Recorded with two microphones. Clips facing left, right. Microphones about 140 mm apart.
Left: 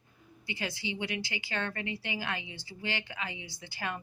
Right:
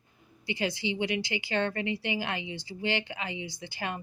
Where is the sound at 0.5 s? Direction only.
20° right (ahead or behind).